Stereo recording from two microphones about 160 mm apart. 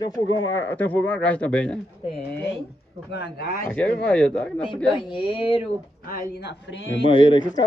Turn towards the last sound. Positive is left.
turn(degrees=25)  # may be behind; listen again after turning